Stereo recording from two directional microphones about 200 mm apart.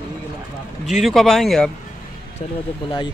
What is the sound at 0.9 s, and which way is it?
Speech, centre (ahead or behind).